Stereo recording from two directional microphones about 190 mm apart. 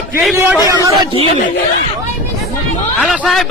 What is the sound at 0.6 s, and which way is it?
Speech, 20° right (ahead or behind).